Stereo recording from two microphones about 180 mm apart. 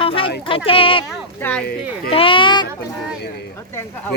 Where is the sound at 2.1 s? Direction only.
30° left (ahead or behind).